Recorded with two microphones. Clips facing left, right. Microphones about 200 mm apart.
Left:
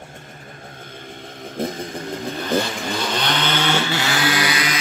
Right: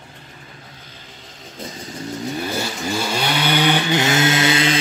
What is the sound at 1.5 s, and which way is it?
Vehicle, 55° left (ahead or behind).